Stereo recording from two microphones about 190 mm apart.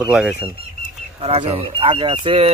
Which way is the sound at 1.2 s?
30° right (ahead or behind).